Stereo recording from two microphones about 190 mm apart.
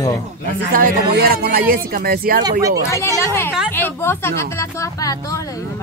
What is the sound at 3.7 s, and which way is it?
Speech, 10° left (ahead or behind).